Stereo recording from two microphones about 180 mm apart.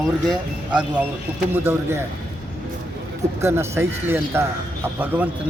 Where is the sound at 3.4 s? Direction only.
15° right (ahead or behind).